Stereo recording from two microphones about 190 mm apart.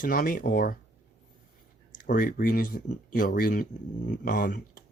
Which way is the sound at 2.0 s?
45° left (ahead or behind).